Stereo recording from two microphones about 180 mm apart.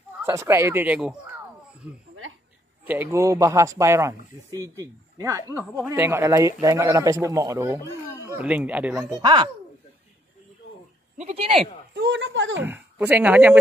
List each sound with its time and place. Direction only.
0.2 s a man's voice: 15° right (ahead or behind)
9.1 s speech: 25° right (ahead or behind)
11.1 s speech: 35° right (ahead or behind)
11.9 s speech: 80° right
12.6 s a man's voice: 10° right (ahead or behind)